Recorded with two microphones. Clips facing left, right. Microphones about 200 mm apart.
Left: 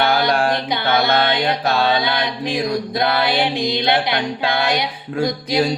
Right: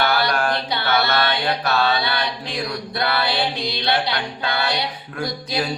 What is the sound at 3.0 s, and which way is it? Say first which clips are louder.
Music: left 2 dB; 15° left (ahead or behind).